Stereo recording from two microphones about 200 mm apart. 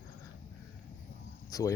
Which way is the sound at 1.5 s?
15° left (ahead or behind).